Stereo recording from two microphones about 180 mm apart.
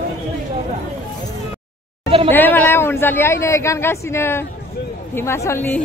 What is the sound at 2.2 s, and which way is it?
A woman's voice, 10° left (ahead or behind).